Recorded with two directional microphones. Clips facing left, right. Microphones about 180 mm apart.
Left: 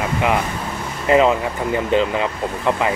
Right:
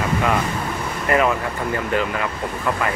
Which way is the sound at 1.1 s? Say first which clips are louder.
Left 5 dB; 20° left (ahead or behind).